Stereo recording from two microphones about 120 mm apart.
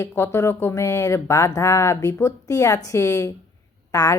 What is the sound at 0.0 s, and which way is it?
Speech, 20° left (ahead or behind).